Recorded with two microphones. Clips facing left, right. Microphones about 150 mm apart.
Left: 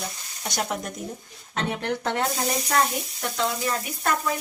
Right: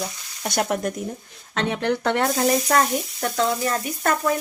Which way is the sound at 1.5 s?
90° right.